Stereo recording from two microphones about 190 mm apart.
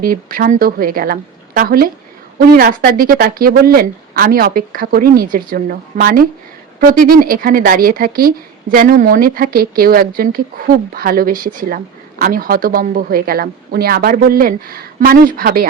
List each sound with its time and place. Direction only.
0.0 s speech: 50° right (ahead or behind)